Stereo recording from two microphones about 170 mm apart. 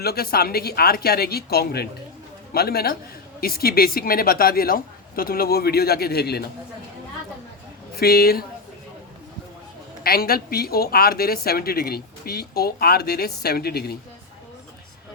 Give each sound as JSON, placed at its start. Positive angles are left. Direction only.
{"t": 0.0, "sound": "speech", "side_deg": 65}
{"t": 7.9, "sound": "speech", "side_deg": 65}
{"t": 10.0, "sound": "speech", "side_deg": 60}